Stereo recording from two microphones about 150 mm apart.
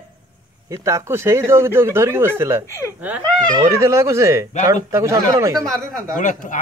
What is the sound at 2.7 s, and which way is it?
Speech, 15° left (ahead or behind).